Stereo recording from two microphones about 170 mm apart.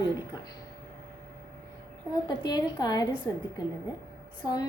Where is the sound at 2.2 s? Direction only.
25° left (ahead or behind).